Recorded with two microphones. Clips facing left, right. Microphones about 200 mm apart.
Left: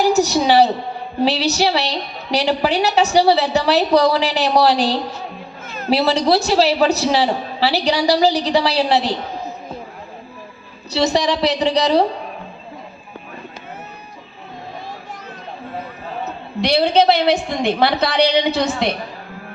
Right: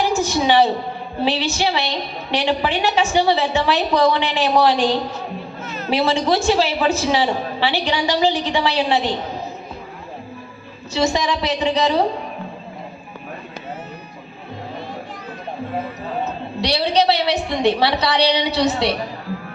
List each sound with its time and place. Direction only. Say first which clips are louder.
0.1 s a woman's voice: left 3 dB; 40° left (ahead or behind)
10.9 s a woman's voice: left 2 dB; 35° left (ahead or behind)
16.6 s a woman's voice: left 4 dB; 50° left (ahead or behind)